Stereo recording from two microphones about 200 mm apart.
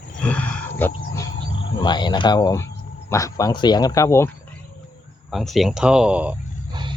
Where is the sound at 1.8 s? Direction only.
20° left (ahead or behind).